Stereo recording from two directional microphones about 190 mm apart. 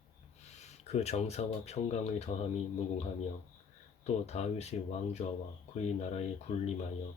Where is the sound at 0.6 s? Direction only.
35° left (ahead or behind).